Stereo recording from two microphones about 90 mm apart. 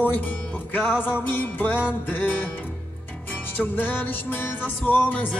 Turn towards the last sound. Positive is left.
turn(degrees=20)  # may be behind; listen again after turning